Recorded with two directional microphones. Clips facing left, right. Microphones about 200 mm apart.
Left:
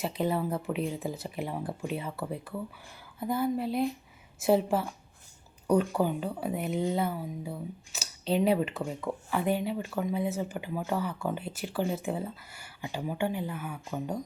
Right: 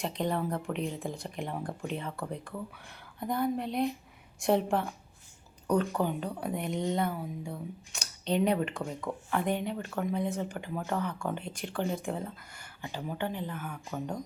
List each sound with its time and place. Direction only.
0.0 s speech: 5° left (ahead or behind)